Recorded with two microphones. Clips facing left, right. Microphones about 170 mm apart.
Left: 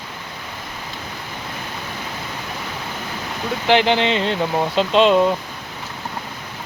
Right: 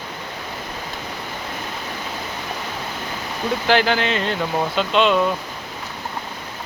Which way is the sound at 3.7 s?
20° left (ahead or behind).